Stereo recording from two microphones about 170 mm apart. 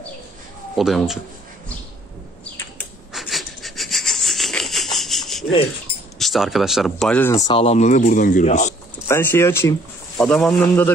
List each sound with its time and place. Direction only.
0.7 s speech: centre (ahead or behind)
3.1 s wheeze: centre (ahead or behind)
6.1 s speech: centre (ahead or behind)
7.4 s speech: 35° left (ahead or behind)
9.0 s speech: 15° left (ahead or behind)
10.2 s speech: 5° left (ahead or behind)